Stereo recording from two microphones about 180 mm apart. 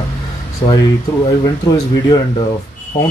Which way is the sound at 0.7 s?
20° left (ahead or behind).